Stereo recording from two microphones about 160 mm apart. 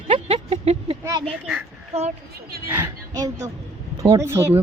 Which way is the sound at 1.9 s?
40° right (ahead or behind).